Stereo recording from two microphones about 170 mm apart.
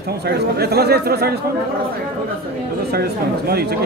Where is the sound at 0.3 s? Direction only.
70° right (ahead or behind).